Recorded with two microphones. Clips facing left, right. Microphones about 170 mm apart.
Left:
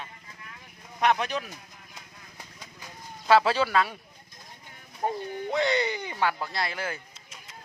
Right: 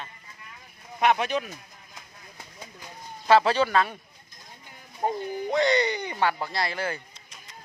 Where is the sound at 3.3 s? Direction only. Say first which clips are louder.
Right 1 dB; 5° left (ahead or behind).